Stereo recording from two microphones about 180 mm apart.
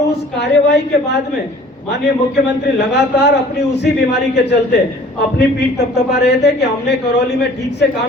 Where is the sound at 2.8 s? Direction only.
70° left (ahead or behind).